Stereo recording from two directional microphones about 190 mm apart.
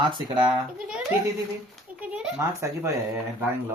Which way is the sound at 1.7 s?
5° right (ahead or behind).